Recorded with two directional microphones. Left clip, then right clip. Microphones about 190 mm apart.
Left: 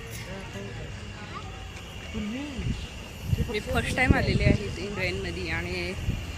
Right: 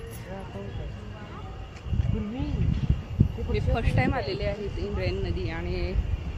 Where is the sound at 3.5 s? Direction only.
5° right (ahead or behind).